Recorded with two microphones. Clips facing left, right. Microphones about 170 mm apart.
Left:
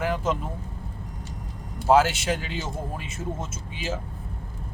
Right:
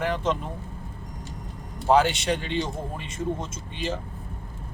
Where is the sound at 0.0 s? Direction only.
5° left (ahead or behind).